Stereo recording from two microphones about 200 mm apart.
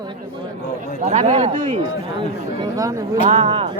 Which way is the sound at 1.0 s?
35° right (ahead or behind).